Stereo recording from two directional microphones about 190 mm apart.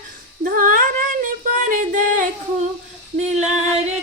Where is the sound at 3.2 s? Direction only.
35° right (ahead or behind).